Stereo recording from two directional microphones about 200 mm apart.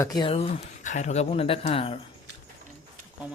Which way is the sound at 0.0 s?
20° left (ahead or behind).